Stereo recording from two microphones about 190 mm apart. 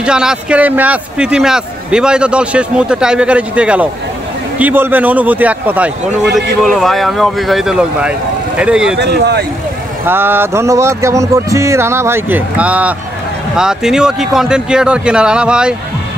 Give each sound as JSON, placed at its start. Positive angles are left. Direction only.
{"t": 0.0, "sound": "a man's voice", "side_deg": -5}
{"t": 8.9, "sound": "speech", "side_deg": -60}
{"t": 10.0, "sound": "a man's voice", "side_deg": -10}